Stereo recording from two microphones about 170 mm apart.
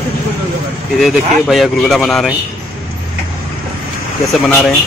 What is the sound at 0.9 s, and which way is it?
Speech, centre (ahead or behind).